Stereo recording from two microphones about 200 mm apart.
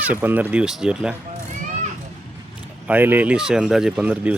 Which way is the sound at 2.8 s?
10° right (ahead or behind).